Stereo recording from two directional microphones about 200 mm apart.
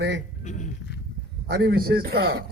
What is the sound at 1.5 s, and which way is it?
Speech, 50° right (ahead or behind).